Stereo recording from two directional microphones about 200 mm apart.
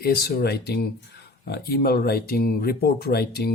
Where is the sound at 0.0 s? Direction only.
50° left (ahead or behind).